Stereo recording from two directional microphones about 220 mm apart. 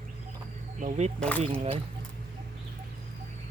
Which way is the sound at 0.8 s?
30° right (ahead or behind).